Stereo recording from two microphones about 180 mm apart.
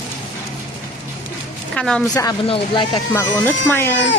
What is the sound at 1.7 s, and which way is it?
Speech, 5° left (ahead or behind).